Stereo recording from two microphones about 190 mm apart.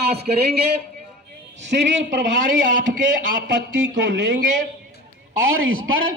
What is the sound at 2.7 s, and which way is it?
Speech, 45° right (ahead or behind).